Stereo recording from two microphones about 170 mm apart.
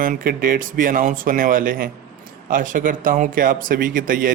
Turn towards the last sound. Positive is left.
turn(degrees=-55)  # may be behind; listen again after turning